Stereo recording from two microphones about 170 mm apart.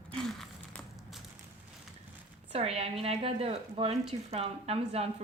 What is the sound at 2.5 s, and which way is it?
Speech, 35° right (ahead or behind).